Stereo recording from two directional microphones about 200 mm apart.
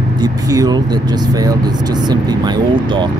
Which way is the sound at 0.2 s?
20° right (ahead or behind).